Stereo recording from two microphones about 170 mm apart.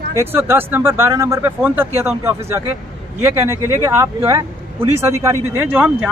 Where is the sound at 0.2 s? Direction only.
15° right (ahead or behind).